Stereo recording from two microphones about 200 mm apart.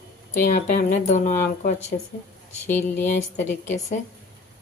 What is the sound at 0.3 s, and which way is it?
Speech, 45° left (ahead or behind).